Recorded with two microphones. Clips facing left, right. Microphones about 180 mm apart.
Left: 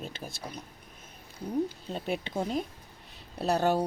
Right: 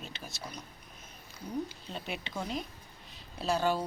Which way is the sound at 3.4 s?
60° left (ahead or behind).